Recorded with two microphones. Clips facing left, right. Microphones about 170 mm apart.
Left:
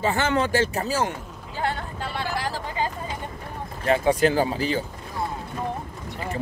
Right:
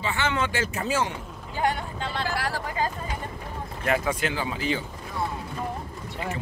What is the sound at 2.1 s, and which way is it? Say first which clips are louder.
Speech: even; 20° left (ahead or behind).